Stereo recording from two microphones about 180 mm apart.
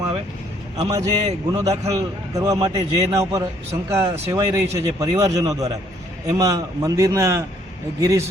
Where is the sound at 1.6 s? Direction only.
20° right (ahead or behind).